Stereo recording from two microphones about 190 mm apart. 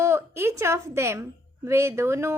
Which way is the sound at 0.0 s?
15° right (ahead or behind).